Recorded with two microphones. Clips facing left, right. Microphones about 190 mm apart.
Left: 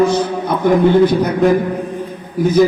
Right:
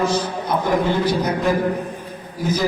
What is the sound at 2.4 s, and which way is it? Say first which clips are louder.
Speech: left 10 dB; 55° left (ahead or behind).